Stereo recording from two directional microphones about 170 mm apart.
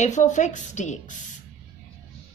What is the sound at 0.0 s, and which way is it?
A woman's voice, 45° left (ahead or behind).